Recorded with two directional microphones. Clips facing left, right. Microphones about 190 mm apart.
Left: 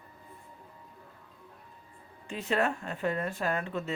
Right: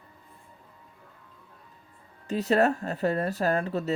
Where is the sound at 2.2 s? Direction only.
40° right (ahead or behind).